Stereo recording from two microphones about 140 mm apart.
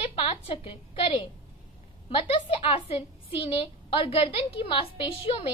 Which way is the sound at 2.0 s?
40° left (ahead or behind).